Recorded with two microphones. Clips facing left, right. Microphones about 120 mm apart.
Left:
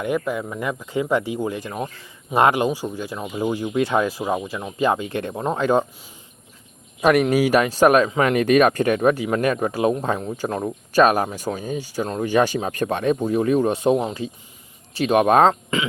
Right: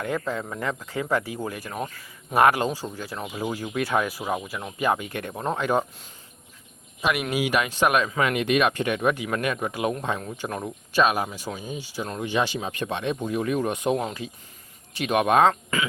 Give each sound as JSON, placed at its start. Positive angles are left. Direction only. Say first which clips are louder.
{"t": 0.0, "sound": "speech", "louder": "left 4 dB", "side_deg": 15}
{"t": 7.0, "sound": "speech", "louder": "left 8 dB", "side_deg": 40}
{"t": 10.9, "sound": "speech", "louder": "left 6 dB", "side_deg": 45}
{"t": 12.0, "sound": "speech", "louder": "left 5 dB", "side_deg": 30}
{"t": 12.3, "sound": "speech", "louder": "left 7 dB", "side_deg": 45}
{"t": 13.1, "sound": "speech", "louder": "left 6 dB", "side_deg": 35}